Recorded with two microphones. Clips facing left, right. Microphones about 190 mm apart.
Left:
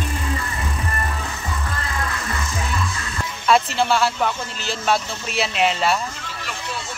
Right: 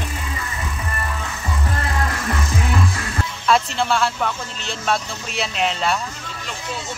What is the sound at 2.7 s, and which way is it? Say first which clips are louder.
Music: right 4 dB; 55° right (ahead or behind).